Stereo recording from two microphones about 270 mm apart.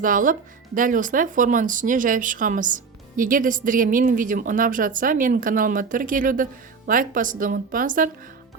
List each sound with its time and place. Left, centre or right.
0.0 s speech: right